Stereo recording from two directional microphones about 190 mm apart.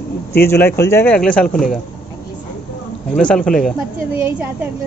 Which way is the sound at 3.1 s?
5° left (ahead or behind).